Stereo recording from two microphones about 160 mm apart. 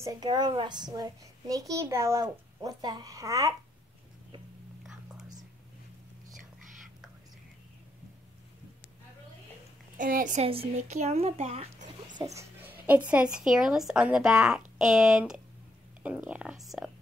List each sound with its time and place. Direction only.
0.0 s a child's voice: 25° right (ahead or behind)
4.8 s whispering: 5° right (ahead or behind)
9.9 s a woman's voice: 55° right (ahead or behind)
10.4 s speech: 35° right (ahead or behind)
12.4 s a sound: 10° right (ahead or behind)
13.1 s a woman's voice: 5° right (ahead or behind)